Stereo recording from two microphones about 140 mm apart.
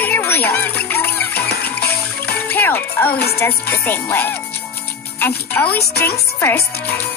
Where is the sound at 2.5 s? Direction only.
15° left (ahead or behind).